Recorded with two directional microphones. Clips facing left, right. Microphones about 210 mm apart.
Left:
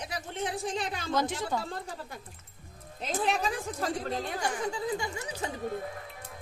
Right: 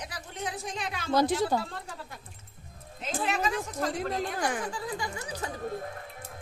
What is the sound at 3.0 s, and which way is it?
Speech, 35° left (ahead or behind).